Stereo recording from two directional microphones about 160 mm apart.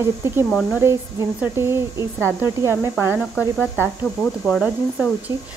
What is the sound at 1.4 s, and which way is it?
Speech, 15° right (ahead or behind).